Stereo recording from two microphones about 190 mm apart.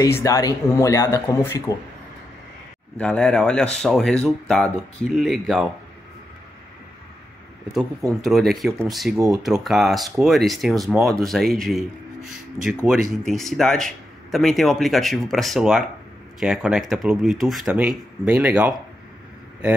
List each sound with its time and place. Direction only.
0.0 s speech: 15° left (ahead or behind)
3.0 s speech: 5° left (ahead or behind)
8.2 s speech: centre (ahead or behind)